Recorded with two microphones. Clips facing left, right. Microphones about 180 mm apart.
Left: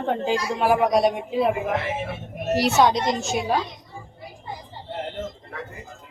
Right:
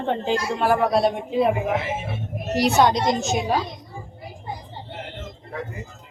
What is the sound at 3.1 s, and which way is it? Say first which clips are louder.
Speech: right 2 dB; 45° right (ahead or behind).